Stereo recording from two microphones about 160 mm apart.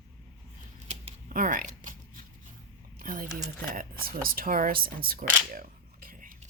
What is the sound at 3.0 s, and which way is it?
Speech, 60° right (ahead or behind).